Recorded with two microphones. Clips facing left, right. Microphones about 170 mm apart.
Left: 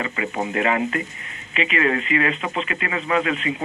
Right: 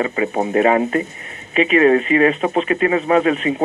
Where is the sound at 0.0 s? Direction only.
35° right (ahead or behind).